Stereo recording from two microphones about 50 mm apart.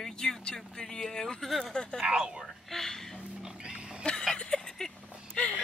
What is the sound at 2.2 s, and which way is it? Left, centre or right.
Speech, centre.